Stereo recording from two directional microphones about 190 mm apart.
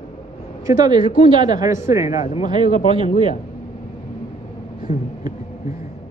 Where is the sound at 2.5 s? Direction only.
30° right (ahead or behind).